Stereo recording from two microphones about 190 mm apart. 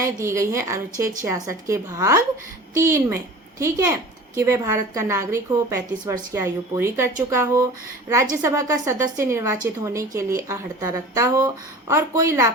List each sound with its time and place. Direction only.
0.0 s a woman's voice: 15° right (ahead or behind)